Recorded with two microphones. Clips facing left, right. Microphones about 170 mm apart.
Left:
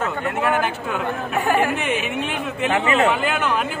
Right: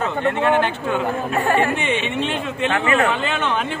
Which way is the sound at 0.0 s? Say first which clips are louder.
Right 3 dB; 5° left (ahead or behind).